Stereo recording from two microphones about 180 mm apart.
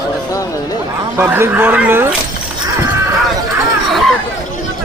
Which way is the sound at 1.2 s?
10° right (ahead or behind).